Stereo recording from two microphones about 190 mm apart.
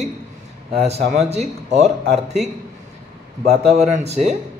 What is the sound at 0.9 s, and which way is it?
Speech, 35° right (ahead or behind).